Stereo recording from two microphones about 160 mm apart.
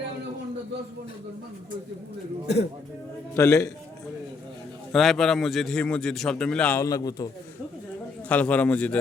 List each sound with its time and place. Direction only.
3.3 s a man's voice: 15° left (ahead or behind)
4.9 s a man's voice: centre (ahead or behind)
6.7 s a man's voice: 20° left (ahead or behind)
8.3 s a man's voice: 10° left (ahead or behind)